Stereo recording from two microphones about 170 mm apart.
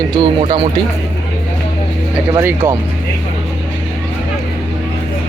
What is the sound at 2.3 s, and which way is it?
Speech, 15° right (ahead or behind).